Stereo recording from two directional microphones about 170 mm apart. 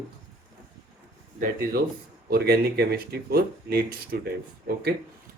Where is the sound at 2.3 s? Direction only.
65° right (ahead or behind).